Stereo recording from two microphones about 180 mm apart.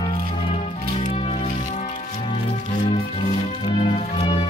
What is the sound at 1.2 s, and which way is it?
Music, 35° left (ahead or behind).